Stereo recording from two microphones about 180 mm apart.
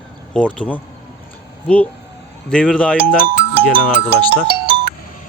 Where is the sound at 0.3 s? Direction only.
5° left (ahead or behind).